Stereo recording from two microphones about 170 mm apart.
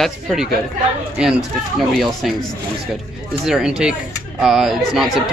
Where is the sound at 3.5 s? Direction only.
5° right (ahead or behind).